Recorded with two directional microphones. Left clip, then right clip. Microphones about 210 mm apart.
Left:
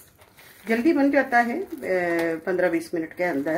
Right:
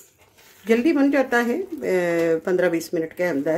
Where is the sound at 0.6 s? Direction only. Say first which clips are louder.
Right 2 dB; 40° right (ahead or behind).